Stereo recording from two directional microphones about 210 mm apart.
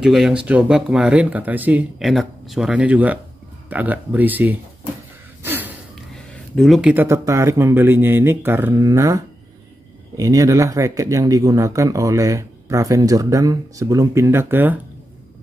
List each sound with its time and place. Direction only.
0.0 s speech: centre (ahead or behind)
5.4 s gasp: 10° right (ahead or behind)
6.5 s speech: centre (ahead or behind)